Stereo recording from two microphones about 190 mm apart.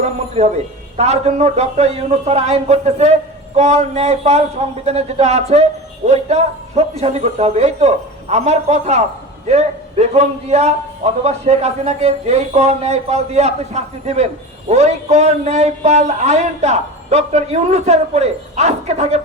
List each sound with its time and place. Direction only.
0.4 s a man's voice: 35° right (ahead or behind)